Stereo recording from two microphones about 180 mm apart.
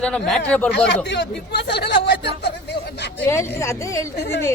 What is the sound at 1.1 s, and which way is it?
Speech, 70° left (ahead or behind).